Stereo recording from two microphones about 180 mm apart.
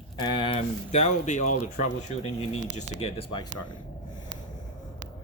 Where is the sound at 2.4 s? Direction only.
35° left (ahead or behind).